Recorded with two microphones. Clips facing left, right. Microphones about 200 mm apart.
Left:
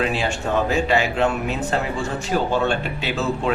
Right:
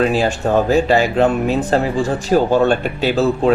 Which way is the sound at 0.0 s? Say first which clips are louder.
Right 7 dB; 40° right (ahead or behind).